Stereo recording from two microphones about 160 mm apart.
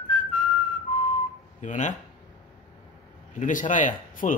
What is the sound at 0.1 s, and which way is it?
Whistling, 55° left (ahead or behind).